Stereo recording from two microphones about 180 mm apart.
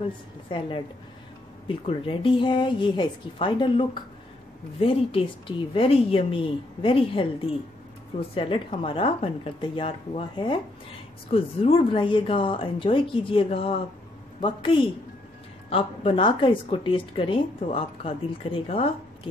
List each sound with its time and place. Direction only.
0.5 s speech: 30° left (ahead or behind)